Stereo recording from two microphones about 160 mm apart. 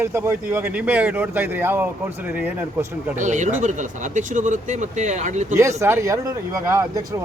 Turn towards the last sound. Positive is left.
turn(degrees=-20)  # may be behind; listen again after turning